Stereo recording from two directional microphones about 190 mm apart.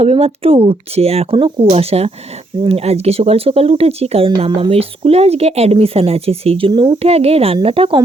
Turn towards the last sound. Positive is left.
turn(degrees=-30)  # may be behind; listen again after turning